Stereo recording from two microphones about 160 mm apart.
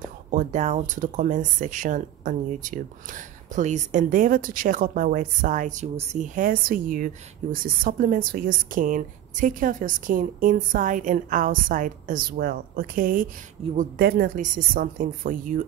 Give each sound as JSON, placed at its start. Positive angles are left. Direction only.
{"t": 0.3, "sound": "a woman's voice", "side_deg": -50}
{"t": 13.7, "sound": "a woman's voice", "side_deg": -75}